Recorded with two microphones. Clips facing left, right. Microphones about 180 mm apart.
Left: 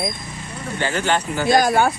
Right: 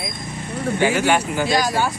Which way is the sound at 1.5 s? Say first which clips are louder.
Left 6 dB; 55° left (ahead or behind).